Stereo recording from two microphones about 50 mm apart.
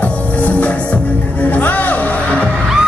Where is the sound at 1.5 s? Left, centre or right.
Left.